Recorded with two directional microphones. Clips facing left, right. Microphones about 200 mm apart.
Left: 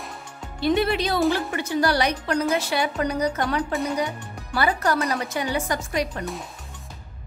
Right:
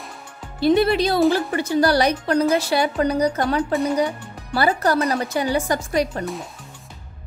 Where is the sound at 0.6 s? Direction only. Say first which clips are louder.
Right 5 dB; 35° right (ahead or behind).